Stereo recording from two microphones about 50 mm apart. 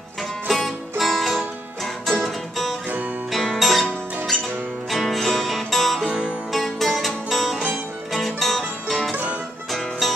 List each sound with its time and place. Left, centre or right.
0.5 s music: centre
4.8 s music: centre
6.0 s music: centre
6.5 s music: centre
9.1 s music: right
9.7 s music: centre